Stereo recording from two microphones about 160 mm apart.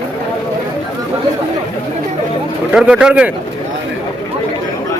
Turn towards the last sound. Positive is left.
turn(degrees=-5)  # may be behind; listen again after turning